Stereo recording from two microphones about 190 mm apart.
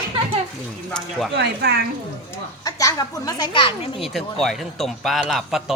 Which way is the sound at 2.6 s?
20° left (ahead or behind).